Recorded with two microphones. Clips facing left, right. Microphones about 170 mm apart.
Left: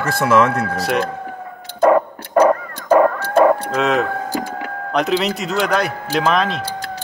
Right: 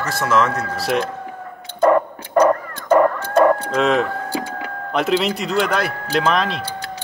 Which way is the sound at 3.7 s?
Centre (ahead or behind).